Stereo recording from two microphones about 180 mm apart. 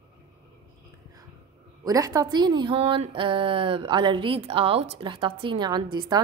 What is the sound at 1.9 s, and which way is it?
A woman's voice, 20° right (ahead or behind).